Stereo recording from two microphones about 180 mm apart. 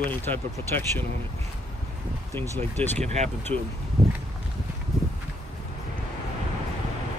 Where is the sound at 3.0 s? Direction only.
40° right (ahead or behind).